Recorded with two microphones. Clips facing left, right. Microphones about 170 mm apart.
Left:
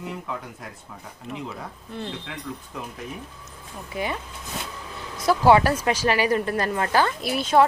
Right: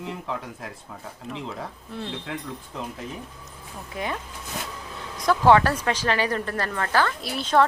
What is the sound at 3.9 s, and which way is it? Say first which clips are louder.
A woman's voice: left 2 dB; 5° left (ahead or behind).